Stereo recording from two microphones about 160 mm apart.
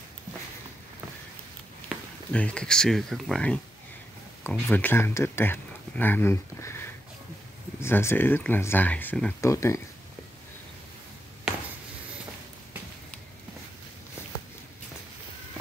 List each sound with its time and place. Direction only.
2.3 s speech: 5° left (ahead or behind)
9.4 s speech: 20° left (ahead or behind)